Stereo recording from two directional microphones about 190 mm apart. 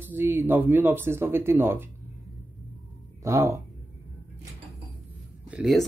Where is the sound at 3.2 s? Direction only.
15° right (ahead or behind).